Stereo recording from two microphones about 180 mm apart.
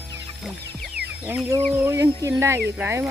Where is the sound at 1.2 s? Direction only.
10° right (ahead or behind).